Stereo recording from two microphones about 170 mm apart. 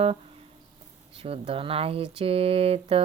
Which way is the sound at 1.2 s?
35° right (ahead or behind).